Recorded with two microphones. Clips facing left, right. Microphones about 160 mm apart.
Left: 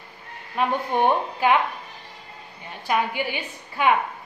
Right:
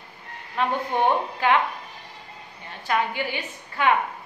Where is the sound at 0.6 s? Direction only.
10° left (ahead or behind).